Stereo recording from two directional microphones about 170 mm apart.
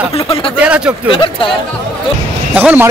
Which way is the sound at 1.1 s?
30° left (ahead or behind).